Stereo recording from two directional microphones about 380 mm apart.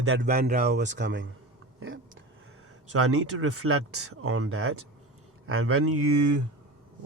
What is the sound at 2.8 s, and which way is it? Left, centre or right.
Speech, right.